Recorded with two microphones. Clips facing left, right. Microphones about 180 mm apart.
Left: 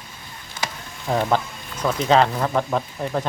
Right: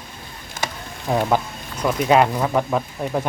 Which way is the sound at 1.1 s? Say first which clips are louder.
Right 1 dB; 10° right (ahead or behind).